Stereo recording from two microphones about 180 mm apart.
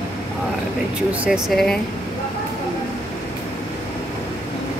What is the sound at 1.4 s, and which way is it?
Speech, centre (ahead or behind).